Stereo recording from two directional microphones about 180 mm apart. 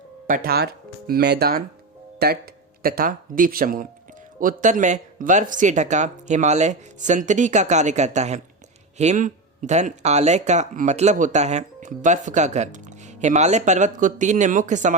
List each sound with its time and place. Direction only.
0.3 s speech: 50° right (ahead or behind)